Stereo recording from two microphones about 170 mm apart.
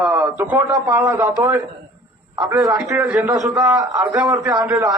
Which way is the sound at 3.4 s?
20° right (ahead or behind).